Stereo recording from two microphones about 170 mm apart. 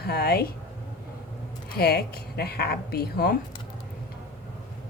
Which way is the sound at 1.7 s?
70° left (ahead or behind).